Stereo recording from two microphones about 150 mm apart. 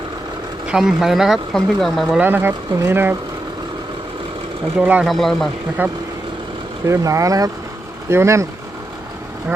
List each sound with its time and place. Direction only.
0.7 s speech: 5° right (ahead or behind)
2.2 s speech: 15° right (ahead or behind)
4.8 s speech: 5° right (ahead or behind)
5.8 s speech: 10° right (ahead or behind)